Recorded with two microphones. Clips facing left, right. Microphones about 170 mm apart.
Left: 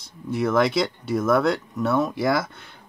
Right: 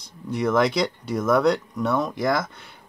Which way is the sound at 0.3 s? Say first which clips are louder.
Even; 5° left (ahead or behind).